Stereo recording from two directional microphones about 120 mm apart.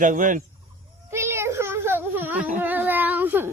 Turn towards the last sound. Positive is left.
turn(degrees=-15)  # may be behind; listen again after turning